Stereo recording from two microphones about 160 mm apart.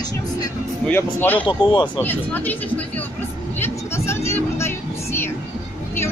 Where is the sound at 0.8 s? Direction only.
10° left (ahead or behind).